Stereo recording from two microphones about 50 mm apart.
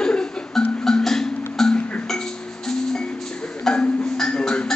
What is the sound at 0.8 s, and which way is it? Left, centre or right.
Music, centre.